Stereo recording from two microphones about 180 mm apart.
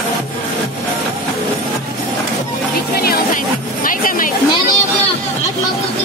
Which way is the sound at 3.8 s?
50° left (ahead or behind).